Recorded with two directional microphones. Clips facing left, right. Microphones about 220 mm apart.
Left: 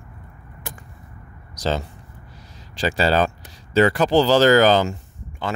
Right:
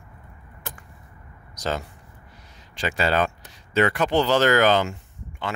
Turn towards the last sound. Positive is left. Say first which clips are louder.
# left 3 dB
turn(degrees=35)  # may be behind; listen again after turning